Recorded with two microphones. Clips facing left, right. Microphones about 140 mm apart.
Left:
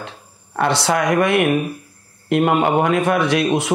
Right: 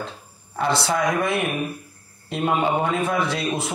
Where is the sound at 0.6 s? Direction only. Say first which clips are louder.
Left 4 dB; 70° left (ahead or behind).